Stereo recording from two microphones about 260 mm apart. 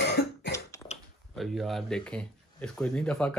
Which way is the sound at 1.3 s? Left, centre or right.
Centre.